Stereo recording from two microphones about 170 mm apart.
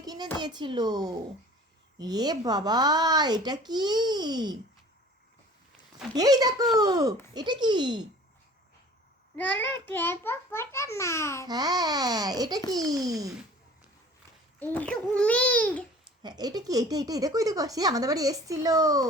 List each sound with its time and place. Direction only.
0.0 s a sound: 20° right (ahead or behind)
0.3 s speech: 25° right (ahead or behind)
6.1 s speech: 20° right (ahead or behind)
9.3 s a child's voice: 10° left (ahead or behind)
11.4 s speech: 25° right (ahead or behind)
14.6 s a child's voice: 10° left (ahead or behind)
16.2 s speech: 25° right (ahead or behind)